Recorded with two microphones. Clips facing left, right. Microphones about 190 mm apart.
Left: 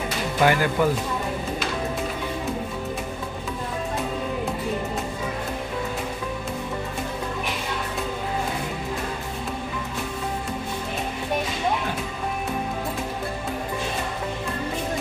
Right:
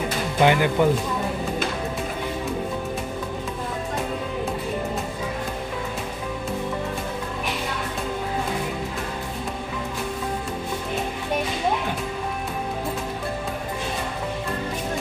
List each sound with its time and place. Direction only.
0.4 s speech: 20° right (ahead or behind)